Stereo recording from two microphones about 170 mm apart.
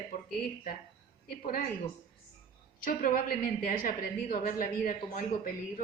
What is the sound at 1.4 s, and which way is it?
Speech, 55° left (ahead or behind).